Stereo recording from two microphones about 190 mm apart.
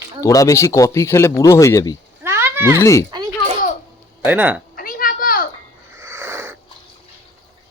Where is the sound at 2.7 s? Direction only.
15° left (ahead or behind).